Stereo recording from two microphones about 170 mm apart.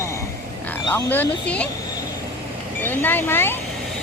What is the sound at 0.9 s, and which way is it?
Speech, 10° left (ahead or behind).